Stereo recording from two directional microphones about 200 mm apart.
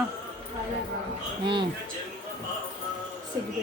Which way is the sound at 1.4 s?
25° right (ahead or behind).